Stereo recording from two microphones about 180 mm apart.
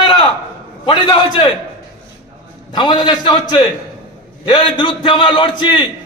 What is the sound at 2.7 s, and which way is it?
A man's voice, 25° left (ahead or behind).